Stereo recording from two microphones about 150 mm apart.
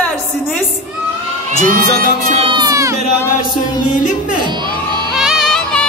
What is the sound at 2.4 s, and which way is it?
Crowd, 30° right (ahead or behind).